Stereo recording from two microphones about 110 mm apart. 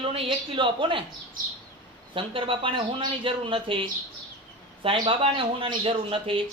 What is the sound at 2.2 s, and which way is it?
Speech, 55° right (ahead or behind).